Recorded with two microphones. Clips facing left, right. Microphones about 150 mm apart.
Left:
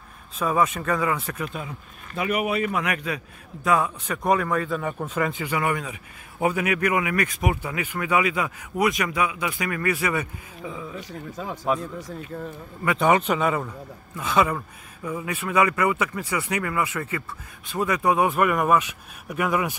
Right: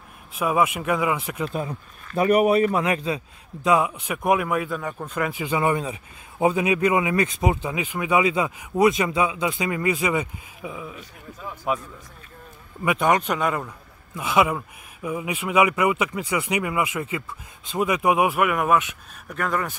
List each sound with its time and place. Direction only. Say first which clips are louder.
0.4 s speech: right 1 dB; 10° right (ahead or behind)
1.4 s a man's voice: right 4 dB; 35° right (ahead or behind)
3.6 s speech: right 2 dB; 15° right (ahead or behind); by 5.3 s 5° left (ahead or behind)
5.3 s speech: right 3 dB; 20° right (ahead or behind)
11.0 s speech: left 6 dB; 90° left
13.0 s a man's voice: left 2 dB; centre (ahead or behind)
14.1 s speech: right 1 dB; 10° right (ahead or behind)
19.3 s speech: left 2 dB; 10° left (ahead or behind)